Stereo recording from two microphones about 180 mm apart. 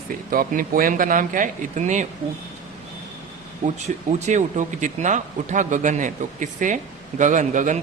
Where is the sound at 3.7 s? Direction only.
40° right (ahead or behind).